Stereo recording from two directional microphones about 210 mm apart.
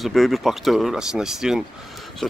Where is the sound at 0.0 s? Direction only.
Centre (ahead or behind).